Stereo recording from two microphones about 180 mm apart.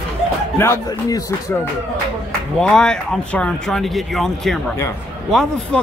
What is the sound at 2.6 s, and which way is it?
Speech, 5° left (ahead or behind).